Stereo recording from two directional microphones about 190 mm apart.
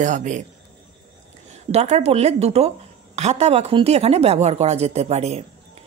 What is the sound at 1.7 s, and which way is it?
A woman's voice, 35° right (ahead or behind).